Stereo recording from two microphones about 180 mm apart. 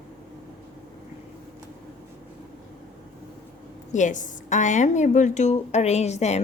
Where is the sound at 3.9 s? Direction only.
45° left (ahead or behind).